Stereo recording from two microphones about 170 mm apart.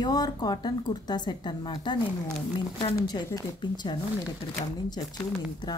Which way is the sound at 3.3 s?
20° left (ahead or behind).